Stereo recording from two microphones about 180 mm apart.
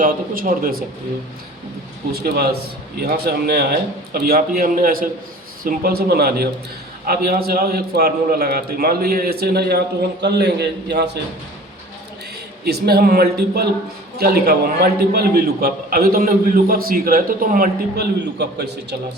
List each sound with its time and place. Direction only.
0.0 s speech: 50° right (ahead or behind)
2.1 s a man's voice: 60° right (ahead or behind)
12.6 s a man's voice: 60° right (ahead or behind)